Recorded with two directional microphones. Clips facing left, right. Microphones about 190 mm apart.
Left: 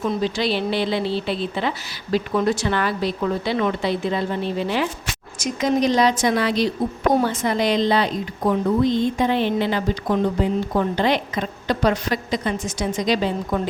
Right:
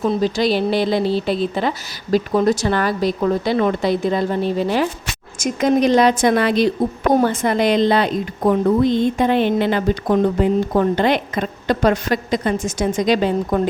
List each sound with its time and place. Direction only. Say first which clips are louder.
0.0 s a woman's voice: right 4 dB; 40° right (ahead or behind)
5.4 s a woman's voice: right 4 dB; 55° right (ahead or behind)